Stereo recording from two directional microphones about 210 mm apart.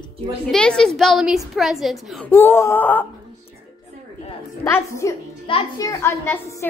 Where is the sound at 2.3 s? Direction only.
10° left (ahead or behind).